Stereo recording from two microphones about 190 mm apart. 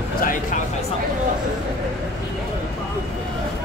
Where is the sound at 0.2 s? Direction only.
45° left (ahead or behind).